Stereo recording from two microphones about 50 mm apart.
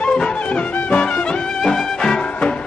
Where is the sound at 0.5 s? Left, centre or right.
Left.